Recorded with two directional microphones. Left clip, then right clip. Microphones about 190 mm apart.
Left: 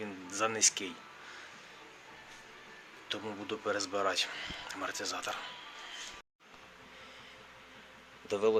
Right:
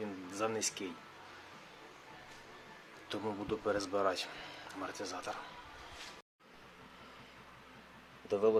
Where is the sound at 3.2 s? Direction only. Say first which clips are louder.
Right 2 dB; 15° right (ahead or behind).